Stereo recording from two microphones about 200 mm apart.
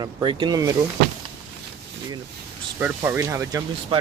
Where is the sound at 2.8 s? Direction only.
10° right (ahead or behind).